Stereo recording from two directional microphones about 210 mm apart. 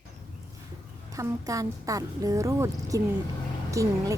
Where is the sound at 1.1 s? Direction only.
15° right (ahead or behind).